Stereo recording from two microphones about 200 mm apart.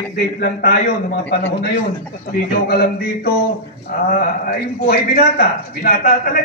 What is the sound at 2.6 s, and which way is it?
A man's voice, 50° left (ahead or behind).